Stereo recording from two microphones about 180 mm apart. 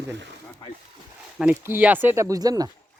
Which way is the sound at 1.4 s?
10° right (ahead or behind).